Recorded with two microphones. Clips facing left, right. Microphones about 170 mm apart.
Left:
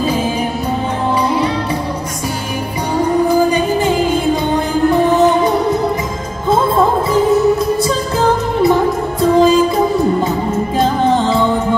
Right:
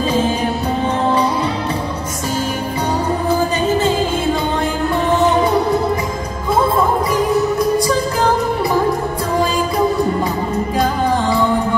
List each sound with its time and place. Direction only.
9.2 s music: 20° left (ahead or behind)
10.8 s music: 25° left (ahead or behind)